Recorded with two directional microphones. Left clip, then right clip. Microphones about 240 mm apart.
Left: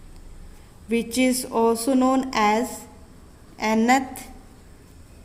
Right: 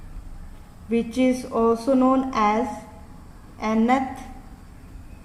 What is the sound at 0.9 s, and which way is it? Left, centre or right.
A woman's voice, left.